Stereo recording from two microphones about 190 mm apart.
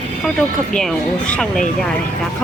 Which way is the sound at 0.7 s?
5° left (ahead or behind).